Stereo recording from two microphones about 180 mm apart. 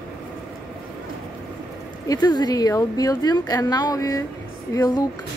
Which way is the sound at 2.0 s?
20° left (ahead or behind).